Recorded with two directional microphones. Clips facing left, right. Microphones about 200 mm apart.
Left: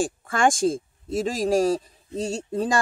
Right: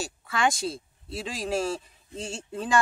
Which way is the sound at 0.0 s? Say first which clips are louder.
Left 5 dB; 50° left (ahead or behind).